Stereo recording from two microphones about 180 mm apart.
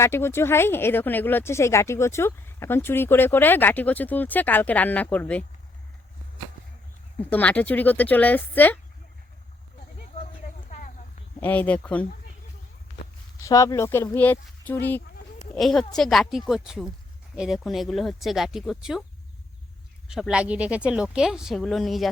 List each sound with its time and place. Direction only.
0.0 s speech: 15° left (ahead or behind)
7.2 s speech: 10° left (ahead or behind)
10.7 s horse: 45° left (ahead or behind)
11.3 s speech: 10° left (ahead or behind)
13.4 s speech: 20° left (ahead or behind); by 19.0 s 5° right (ahead or behind)
20.1 s speech: 5° right (ahead or behind)